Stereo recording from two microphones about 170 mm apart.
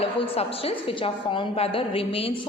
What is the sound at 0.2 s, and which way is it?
A woman's voice, 35° left (ahead or behind).